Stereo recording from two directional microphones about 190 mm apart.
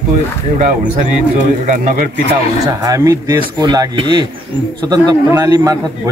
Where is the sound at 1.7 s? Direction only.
45° right (ahead or behind).